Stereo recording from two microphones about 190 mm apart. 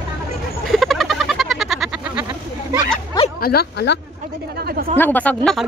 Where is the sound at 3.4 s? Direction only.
55° left (ahead or behind).